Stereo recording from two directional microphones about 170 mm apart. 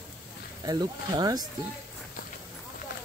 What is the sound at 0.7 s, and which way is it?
Speech, 25° right (ahead or behind).